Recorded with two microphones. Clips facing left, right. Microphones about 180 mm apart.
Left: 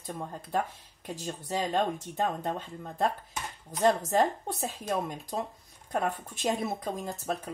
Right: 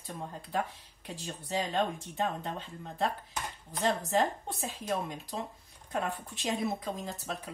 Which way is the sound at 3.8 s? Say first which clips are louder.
Left 4 dB; 45° left (ahead or behind).